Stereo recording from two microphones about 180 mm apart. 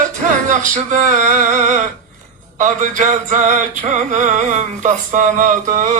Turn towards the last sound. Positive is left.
turn(degrees=-45)  # may be behind; listen again after turning